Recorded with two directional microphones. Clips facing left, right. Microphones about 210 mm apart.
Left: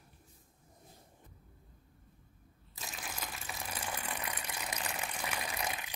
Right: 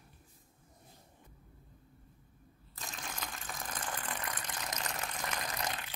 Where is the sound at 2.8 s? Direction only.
5° left (ahead or behind).